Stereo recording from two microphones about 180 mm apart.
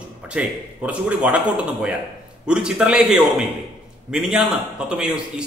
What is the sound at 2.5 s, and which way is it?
A man's voice, 5° right (ahead or behind).